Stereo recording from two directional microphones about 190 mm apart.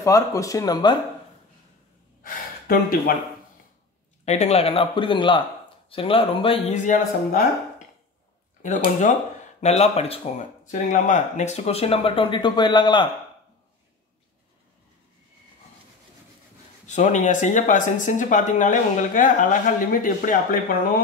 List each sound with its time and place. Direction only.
0.0 s speech: 15° left (ahead or behind)
2.2 s gasp: 50° left (ahead or behind)
4.2 s speech: 35° left (ahead or behind)
8.6 s speech: 40° left (ahead or behind)
10.6 s speech: 45° left (ahead or behind); by 13.1 s 25° left (ahead or behind)
16.8 s speech: 40° left (ahead or behind)